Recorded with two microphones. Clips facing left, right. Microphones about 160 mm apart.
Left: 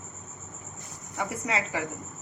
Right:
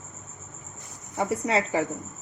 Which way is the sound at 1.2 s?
30° right (ahead or behind).